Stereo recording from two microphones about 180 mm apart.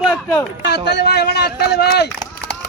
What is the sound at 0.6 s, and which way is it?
A man's voice, 70° left (ahead or behind).